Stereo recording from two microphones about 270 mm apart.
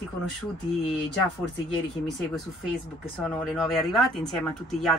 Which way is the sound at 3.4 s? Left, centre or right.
Centre.